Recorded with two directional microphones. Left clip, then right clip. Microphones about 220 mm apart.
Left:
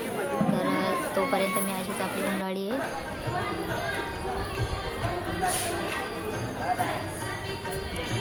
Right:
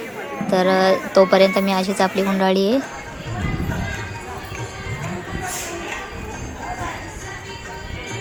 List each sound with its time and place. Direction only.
0.5 s a woman's voice: 40° right (ahead or behind)